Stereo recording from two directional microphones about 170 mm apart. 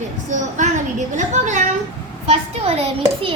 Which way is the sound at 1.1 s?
45° right (ahead or behind).